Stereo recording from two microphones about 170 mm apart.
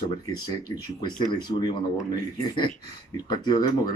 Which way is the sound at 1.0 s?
25° left (ahead or behind).